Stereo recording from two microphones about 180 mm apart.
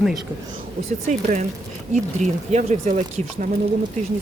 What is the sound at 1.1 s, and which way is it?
Speech, 40° right (ahead or behind).